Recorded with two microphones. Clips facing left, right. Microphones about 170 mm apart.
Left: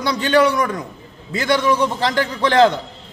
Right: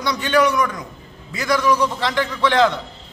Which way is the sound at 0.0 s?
30° left (ahead or behind).